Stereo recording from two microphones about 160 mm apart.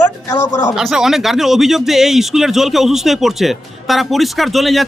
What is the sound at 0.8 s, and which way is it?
Speech, centre (ahead or behind).